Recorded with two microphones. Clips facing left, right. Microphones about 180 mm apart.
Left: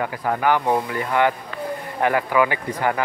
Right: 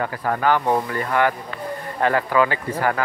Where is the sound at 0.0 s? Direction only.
15° left (ahead or behind).